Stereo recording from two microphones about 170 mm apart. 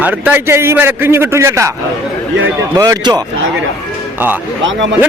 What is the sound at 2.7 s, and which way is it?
Speech, 20° right (ahead or behind).